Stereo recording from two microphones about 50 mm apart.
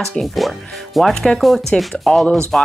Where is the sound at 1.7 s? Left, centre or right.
Centre.